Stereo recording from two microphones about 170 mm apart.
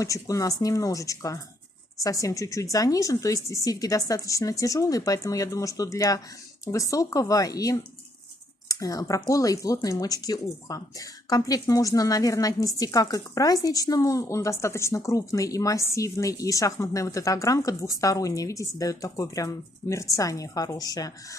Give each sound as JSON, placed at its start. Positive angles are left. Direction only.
{"t": 0.0, "sound": "speech", "side_deg": 20}